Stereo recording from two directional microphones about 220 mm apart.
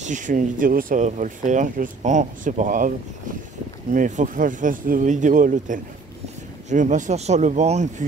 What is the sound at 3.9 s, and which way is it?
Speech, 35° right (ahead or behind).